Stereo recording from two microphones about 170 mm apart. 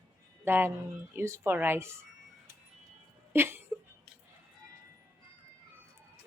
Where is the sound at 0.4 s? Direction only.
15° right (ahead or behind).